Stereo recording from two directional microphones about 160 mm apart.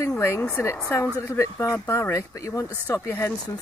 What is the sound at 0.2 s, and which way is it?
Speech, 15° left (ahead or behind).